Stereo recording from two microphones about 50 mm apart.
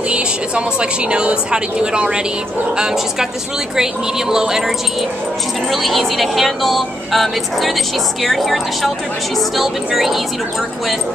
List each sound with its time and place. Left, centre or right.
0.1 s a woman's voice: right
5.7 s speech: centre